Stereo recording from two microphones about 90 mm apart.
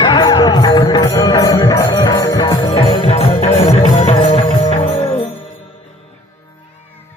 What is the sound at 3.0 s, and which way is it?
Music, 90° left.